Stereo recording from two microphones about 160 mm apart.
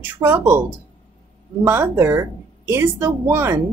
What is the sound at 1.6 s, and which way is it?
A woman's voice, 15° right (ahead or behind).